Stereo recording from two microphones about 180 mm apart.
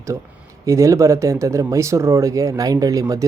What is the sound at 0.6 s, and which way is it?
Speech, 15° right (ahead or behind).